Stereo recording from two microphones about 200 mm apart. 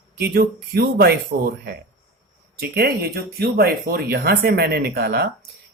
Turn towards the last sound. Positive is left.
turn(degrees=-50)  # may be behind; listen again after turning